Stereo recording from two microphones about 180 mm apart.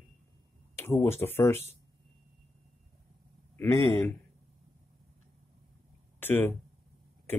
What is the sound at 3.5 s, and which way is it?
Speech, 15° left (ahead or behind).